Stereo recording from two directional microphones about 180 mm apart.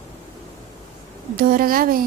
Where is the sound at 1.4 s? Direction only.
55° right (ahead or behind).